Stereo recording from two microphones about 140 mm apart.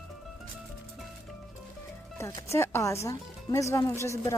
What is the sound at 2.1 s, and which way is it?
Speech, 20° left (ahead or behind).